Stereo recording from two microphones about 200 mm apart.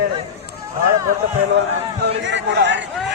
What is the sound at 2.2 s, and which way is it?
Speech, 65° right (ahead or behind).